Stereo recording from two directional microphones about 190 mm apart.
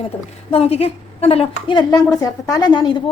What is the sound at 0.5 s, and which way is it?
A woman's voice, 30° left (ahead or behind).